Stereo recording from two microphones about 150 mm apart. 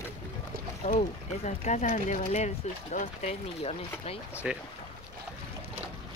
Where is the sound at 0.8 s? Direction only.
55° left (ahead or behind).